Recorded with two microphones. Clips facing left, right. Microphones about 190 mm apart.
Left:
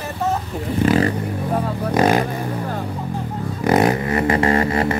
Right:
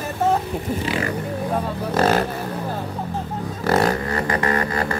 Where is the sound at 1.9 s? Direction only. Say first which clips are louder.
Left 2 dB; 15° left (ahead or behind).